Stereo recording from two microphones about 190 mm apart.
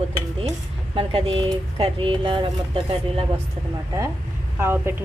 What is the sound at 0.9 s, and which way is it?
Speech, 30° right (ahead or behind).